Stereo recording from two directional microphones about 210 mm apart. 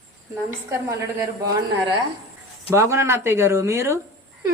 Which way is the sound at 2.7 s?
10° right (ahead or behind).